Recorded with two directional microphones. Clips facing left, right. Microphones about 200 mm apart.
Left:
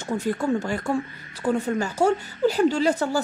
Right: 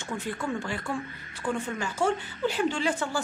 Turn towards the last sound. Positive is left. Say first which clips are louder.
# left 7 dB
turn(degrees=40)  # may be behind; listen again after turning